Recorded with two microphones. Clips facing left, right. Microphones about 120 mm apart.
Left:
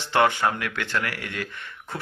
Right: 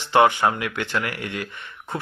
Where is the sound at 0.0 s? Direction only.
15° right (ahead or behind).